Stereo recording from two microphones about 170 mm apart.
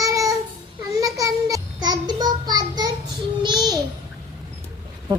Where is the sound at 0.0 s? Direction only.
20° right (ahead or behind).